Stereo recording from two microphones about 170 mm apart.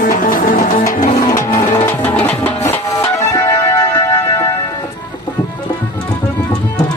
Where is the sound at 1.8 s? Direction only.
10° left (ahead or behind).